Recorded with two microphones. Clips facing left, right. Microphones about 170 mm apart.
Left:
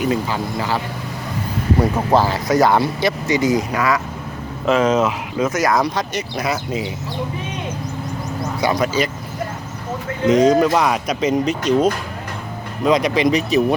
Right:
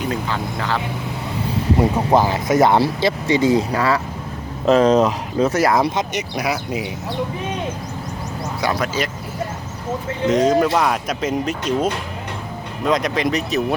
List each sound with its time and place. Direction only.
0.1 s speech: 10° left (ahead or behind)
1.8 s speech: 15° right (ahead or behind)
8.6 s speech: centre (ahead or behind)
10.3 s speech: centre (ahead or behind)